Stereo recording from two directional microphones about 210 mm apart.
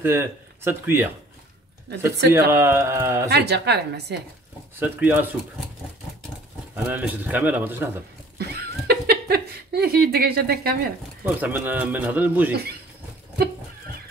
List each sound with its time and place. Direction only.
0.0 s speech: 10° right (ahead or behind)
2.5 s a man's voice: 10° right (ahead or behind)
3.3 s a woman's voice: 50° right (ahead or behind)
4.7 s a man's voice: 10° right (ahead or behind)
6.7 s a man's voice: 5° right (ahead or behind)
8.4 s a sound: 50° right (ahead or behind)
11.2 s a man's voice: 10° right (ahead or behind)